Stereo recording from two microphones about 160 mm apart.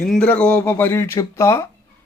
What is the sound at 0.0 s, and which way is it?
A man's voice, centre (ahead or behind).